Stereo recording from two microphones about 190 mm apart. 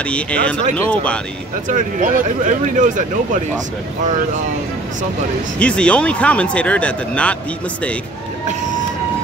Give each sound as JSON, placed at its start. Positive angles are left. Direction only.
{"t": 0.0, "sound": "speech", "side_deg": 5}
{"t": 1.7, "sound": "speech", "side_deg": -45}
{"t": 5.6, "sound": "speech", "side_deg": 5}